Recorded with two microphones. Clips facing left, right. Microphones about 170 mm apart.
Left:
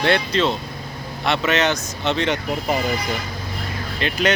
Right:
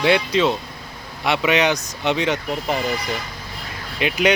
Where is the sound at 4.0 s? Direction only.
10° right (ahead or behind).